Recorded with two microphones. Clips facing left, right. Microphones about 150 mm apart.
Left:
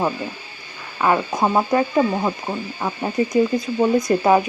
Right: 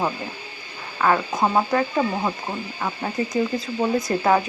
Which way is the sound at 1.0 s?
15° left (ahead or behind).